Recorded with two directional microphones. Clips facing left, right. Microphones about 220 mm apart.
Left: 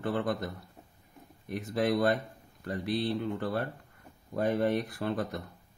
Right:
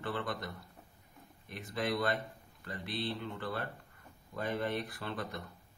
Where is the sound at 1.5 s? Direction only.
45° left (ahead or behind).